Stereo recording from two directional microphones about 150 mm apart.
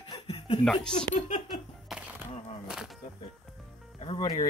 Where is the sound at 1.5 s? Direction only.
5° right (ahead or behind).